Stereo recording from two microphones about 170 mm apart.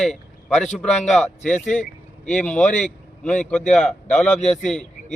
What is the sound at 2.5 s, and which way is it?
A man's voice, 5° left (ahead or behind).